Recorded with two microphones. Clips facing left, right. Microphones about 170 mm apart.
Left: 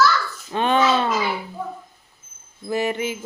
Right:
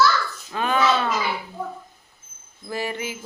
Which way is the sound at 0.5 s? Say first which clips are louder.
Left 4 dB; 30° left (ahead or behind).